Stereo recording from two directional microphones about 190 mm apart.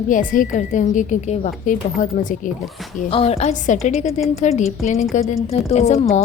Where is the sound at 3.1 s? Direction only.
30° left (ahead or behind).